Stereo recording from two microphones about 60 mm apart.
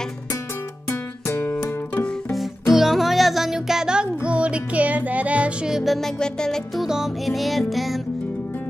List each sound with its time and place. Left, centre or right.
1.2 s music: left
2.7 s music: centre; by 5.7 s right
5.7 s music: centre
5.9 s music: centre
6.8 s music: centre